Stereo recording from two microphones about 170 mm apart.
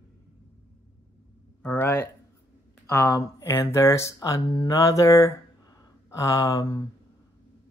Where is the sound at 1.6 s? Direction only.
10° left (ahead or behind).